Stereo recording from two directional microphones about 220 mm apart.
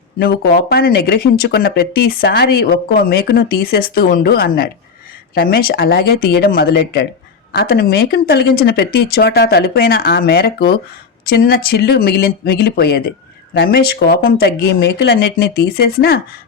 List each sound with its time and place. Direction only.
0.2 s speech: 45° left (ahead or behind)